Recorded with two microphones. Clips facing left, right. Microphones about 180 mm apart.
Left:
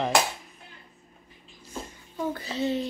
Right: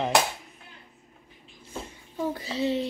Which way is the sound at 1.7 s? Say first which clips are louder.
Even; 30° right (ahead or behind).